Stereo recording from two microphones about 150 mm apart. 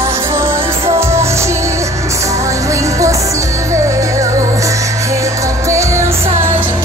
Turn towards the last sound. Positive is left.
turn(degrees=-20)  # may be behind; listen again after turning